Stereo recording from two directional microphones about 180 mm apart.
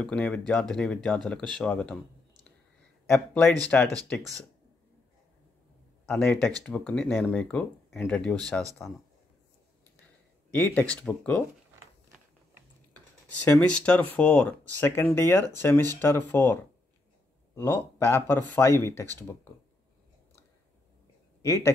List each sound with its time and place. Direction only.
0.0 s speech: 5° left (ahead or behind)
3.1 s speech: centre (ahead or behind)
6.0 s speech: 5° left (ahead or behind)
10.6 s speech: 10° left (ahead or behind)
12.9 s speech: 10° left (ahead or behind)
17.6 s speech: 15° left (ahead or behind)
21.4 s speech: 15° left (ahead or behind)